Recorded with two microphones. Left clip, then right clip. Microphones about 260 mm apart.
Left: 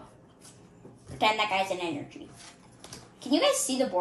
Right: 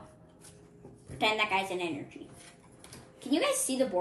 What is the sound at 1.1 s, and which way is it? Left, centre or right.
A woman's voice, centre.